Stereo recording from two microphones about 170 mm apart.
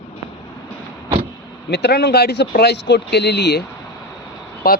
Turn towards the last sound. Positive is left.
turn(degrees=60)  # may be behind; listen again after turning